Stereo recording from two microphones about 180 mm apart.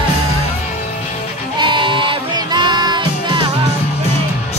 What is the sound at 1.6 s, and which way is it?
Music, 25° right (ahead or behind).